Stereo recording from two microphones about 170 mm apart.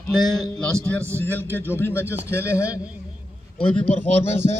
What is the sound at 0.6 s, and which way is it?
A man's voice, 5° left (ahead or behind).